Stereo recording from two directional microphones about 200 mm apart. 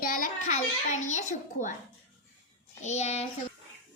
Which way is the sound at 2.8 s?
35° left (ahead or behind).